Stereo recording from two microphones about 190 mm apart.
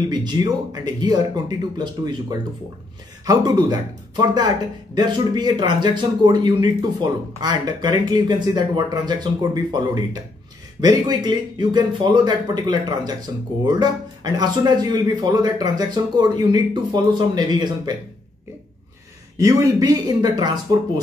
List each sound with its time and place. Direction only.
0.1 s a man's voice: 20° right (ahead or behind)
19.3 s a man's voice: 15° right (ahead or behind)